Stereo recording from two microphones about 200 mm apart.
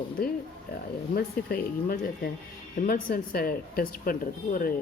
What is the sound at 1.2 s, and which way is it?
Speech, 50° left (ahead or behind).